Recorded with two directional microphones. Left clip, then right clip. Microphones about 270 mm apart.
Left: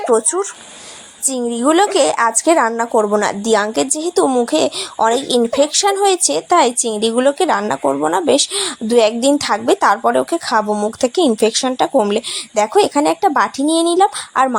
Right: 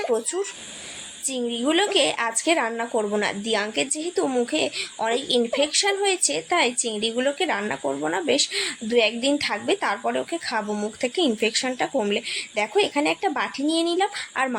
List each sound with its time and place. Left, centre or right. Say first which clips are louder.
1.3 s a woman's voice: left 8 dB; left